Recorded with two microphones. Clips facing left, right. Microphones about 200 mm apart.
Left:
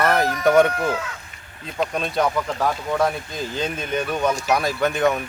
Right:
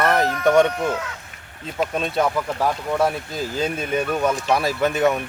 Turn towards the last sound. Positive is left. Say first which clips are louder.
# right 1 dB
turn(degrees=-5)  # may be behind; listen again after turning